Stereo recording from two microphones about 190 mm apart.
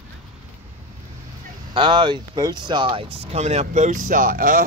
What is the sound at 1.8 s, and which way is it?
Speech, 25° right (ahead or behind).